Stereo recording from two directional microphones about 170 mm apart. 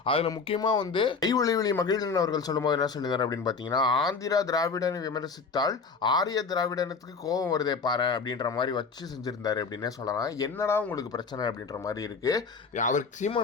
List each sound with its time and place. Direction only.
0.0 s speech: 35° left (ahead or behind)
12.7 s speech: 45° left (ahead or behind)